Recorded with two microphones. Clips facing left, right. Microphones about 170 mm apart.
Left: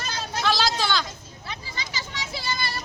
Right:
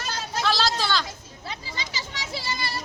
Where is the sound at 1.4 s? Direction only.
30° right (ahead or behind).